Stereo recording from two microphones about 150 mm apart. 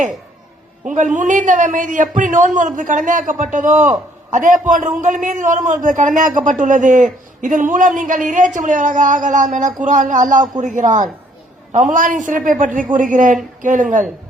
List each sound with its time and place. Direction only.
0.9 s a man's voice: 55° right (ahead or behind)